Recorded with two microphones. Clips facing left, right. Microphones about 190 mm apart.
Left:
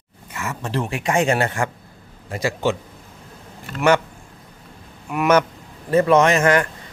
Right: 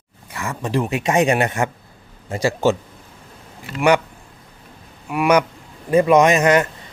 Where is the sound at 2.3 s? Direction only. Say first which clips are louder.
Right 4 dB; 30° right (ahead or behind).